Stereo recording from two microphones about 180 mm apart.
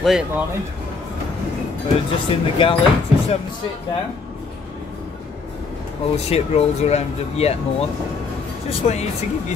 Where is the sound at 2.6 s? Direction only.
30° left (ahead or behind).